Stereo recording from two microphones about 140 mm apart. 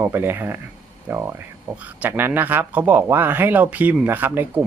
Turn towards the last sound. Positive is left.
turn(degrees=-15)  # may be behind; listen again after turning